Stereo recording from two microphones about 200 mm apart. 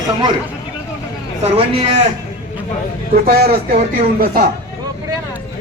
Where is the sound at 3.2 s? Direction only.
50° right (ahead or behind).